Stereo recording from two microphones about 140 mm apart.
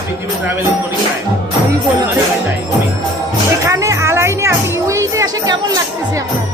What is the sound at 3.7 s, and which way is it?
Music, 25° right (ahead or behind).